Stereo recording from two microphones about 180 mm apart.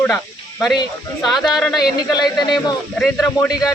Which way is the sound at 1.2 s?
Centre (ahead or behind).